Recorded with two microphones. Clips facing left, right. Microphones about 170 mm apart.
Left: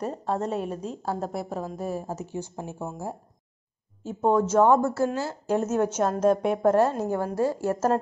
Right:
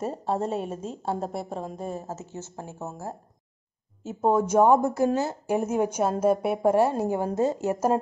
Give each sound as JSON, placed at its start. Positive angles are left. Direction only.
{"t": 0.2, "sound": "a woman's voice", "side_deg": -30}
{"t": 0.5, "sound": "a woman's voice", "side_deg": 0}
{"t": 4.0, "sound": "speech", "side_deg": -5}